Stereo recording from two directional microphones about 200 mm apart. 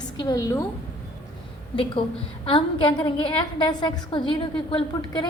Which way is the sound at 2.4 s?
25° left (ahead or behind).